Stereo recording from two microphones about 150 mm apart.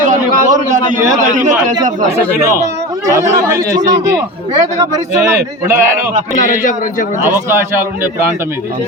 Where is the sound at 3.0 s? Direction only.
20° right (ahead or behind).